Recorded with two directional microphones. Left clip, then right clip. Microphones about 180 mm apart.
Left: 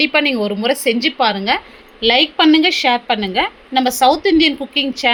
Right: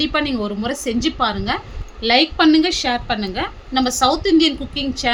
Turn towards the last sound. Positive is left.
turn(degrees=15)  # may be behind; listen again after turning